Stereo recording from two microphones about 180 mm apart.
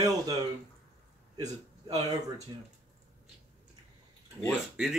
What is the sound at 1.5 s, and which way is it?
Speech, 20° right (ahead or behind).